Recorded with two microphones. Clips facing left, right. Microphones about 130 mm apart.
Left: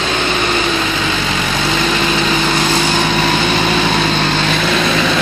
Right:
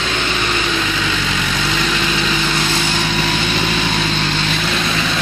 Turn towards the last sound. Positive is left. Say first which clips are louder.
# left 6 dB
turn(degrees=90)